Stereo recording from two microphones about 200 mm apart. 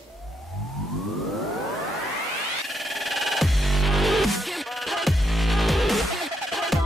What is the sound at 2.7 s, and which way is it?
Music, centre (ahead or behind).